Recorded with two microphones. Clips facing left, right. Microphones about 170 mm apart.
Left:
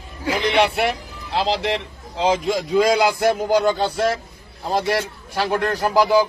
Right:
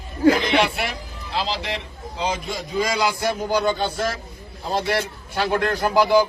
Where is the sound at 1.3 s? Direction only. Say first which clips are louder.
Left 5 dB; 65° left (ahead or behind).